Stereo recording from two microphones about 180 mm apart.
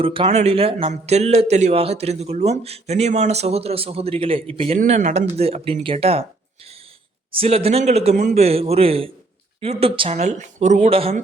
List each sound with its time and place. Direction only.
0.0 s a man's voice: 30° right (ahead or behind)
4.8 s a man's voice: 45° right (ahead or behind)
7.3 s a man's voice: 30° right (ahead or behind)